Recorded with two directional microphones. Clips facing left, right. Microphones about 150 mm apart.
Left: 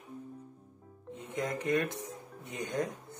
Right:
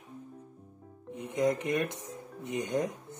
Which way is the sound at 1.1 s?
15° right (ahead or behind).